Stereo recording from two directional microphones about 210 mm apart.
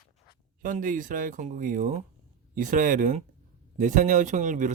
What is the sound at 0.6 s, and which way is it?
Speech, 40° right (ahead or behind).